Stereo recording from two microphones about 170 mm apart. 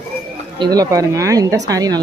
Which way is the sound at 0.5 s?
25° right (ahead or behind).